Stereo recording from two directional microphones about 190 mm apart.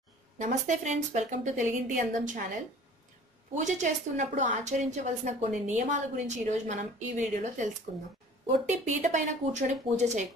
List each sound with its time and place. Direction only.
0.4 s a woman's voice: 40° right (ahead or behind)
3.6 s a woman's voice: 40° right (ahead or behind)